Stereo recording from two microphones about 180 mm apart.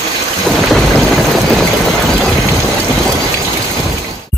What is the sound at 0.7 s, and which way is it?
Vehicle, centre (ahead or behind).